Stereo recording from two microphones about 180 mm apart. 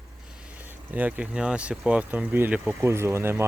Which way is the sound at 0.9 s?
10° right (ahead or behind).